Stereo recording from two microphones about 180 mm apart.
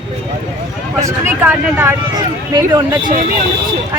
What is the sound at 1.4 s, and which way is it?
Speech, 10° right (ahead or behind).